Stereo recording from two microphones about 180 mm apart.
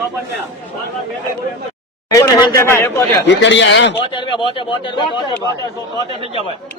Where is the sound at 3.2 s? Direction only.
85° left.